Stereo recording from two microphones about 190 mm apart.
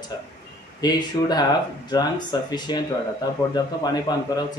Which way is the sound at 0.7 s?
20° left (ahead or behind).